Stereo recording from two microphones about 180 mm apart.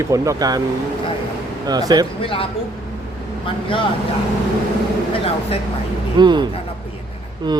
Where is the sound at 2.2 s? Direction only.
30° left (ahead or behind).